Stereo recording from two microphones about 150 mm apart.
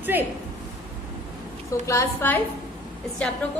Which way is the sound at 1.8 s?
15° left (ahead or behind).